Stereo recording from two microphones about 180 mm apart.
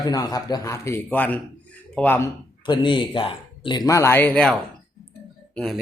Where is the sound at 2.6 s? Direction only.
25° left (ahead or behind); by 4.5 s 5° left (ahead or behind).